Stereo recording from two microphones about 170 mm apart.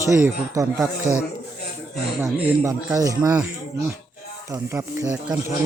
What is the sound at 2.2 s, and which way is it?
Speech, 15° right (ahead or behind).